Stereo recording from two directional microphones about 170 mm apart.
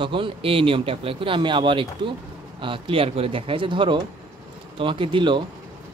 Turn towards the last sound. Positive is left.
turn(degrees=-30)  # may be behind; listen again after turning